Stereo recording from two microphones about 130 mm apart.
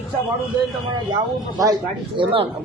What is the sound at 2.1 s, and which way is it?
Speech, 45° right (ahead or behind).